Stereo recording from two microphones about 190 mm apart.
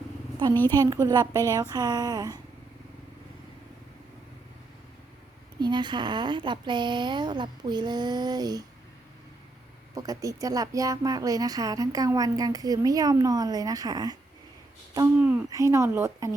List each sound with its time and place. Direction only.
0.7 s a woman's voice: 20° right (ahead or behind)
5.5 s a woman's voice: 25° right (ahead or behind)
9.9 s a woman's voice: 20° right (ahead or behind)